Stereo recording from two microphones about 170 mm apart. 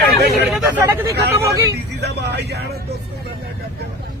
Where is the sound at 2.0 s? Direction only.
75° right (ahead or behind).